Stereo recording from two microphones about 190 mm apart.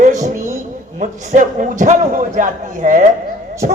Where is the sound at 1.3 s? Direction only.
40° right (ahead or behind).